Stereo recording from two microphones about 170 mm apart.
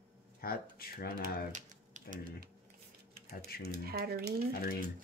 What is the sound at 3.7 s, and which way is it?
Speech, 65° right (ahead or behind).